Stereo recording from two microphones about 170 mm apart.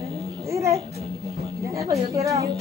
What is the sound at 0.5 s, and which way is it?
Babbling, 20° right (ahead or behind).